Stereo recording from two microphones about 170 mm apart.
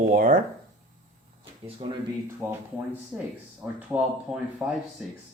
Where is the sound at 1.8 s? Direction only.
30° right (ahead or behind).